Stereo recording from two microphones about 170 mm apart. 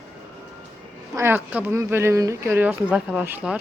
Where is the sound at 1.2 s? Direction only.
10° right (ahead or behind).